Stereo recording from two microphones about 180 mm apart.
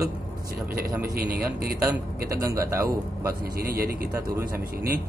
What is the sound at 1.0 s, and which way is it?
Speech, 55° right (ahead or behind).